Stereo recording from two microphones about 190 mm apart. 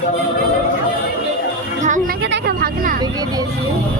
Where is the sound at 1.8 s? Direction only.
40° right (ahead or behind).